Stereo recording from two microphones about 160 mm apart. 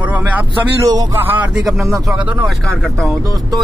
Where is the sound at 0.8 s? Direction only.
20° right (ahead or behind).